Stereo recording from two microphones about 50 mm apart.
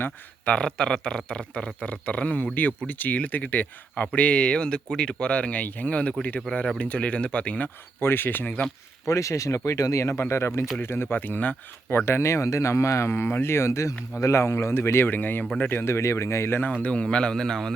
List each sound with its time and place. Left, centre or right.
0.4 s speech: centre
7.9 s speech: left
9.0 s speech: left
11.3 s speech: left
11.9 s speech: left
13.1 s speech: left
15.1 s speech: left
15.7 s speech: left
16.5 s speech: left
16.8 s a man's voice: left